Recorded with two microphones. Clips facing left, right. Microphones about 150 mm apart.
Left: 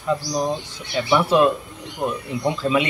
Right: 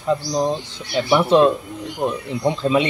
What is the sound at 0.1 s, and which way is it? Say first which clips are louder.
Speech: right 2 dB; 25° right (ahead or behind).